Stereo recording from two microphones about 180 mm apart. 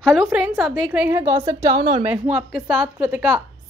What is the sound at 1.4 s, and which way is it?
Speech, 20° right (ahead or behind).